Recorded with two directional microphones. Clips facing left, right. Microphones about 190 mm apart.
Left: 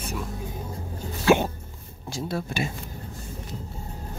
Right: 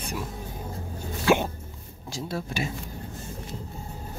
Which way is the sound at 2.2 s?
55° left (ahead or behind).